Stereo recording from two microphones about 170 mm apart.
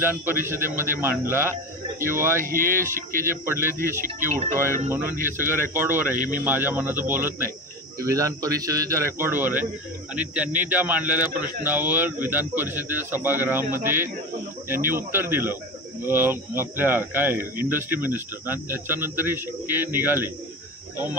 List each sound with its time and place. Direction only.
0.0 s speech: 15° right (ahead or behind)
2.4 s speech: 55° right (ahead or behind)
3.3 s a man's voice: 15° right (ahead or behind)